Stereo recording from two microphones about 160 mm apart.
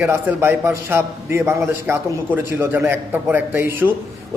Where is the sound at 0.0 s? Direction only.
15° right (ahead or behind).